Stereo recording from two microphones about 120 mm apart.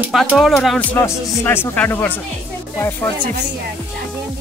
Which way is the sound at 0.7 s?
15° left (ahead or behind).